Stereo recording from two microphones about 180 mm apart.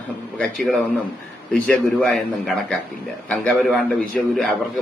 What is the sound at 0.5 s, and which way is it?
A man's voice, centre (ahead or behind).